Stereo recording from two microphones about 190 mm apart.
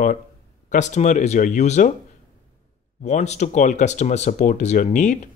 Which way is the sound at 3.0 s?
35° left (ahead or behind).